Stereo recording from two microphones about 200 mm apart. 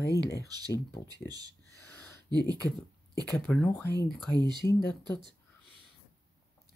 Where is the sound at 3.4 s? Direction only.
5° left (ahead or behind).